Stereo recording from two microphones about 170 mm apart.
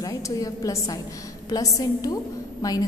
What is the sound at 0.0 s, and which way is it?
A woman's voice, 20° left (ahead or behind).